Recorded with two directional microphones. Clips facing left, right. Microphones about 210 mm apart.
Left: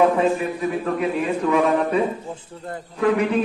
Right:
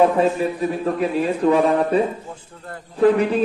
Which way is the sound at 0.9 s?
35° right (ahead or behind).